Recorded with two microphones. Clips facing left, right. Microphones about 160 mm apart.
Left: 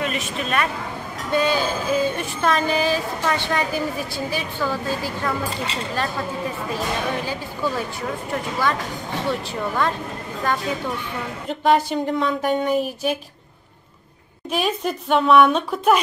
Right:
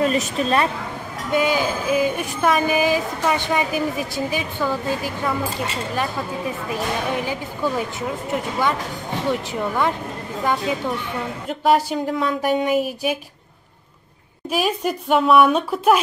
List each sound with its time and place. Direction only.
0.0 s a woman's voice: 35° right (ahead or behind)
1.3 s speech: 15° right (ahead or behind)
6.7 s speech: 15° right (ahead or behind)
11.4 s speech: 5° right (ahead or behind)
14.5 s speech: 5° right (ahead or behind)